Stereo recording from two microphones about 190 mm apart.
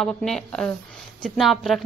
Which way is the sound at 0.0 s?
Centre (ahead or behind).